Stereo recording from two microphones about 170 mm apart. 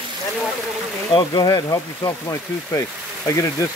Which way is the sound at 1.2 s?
25° left (ahead or behind).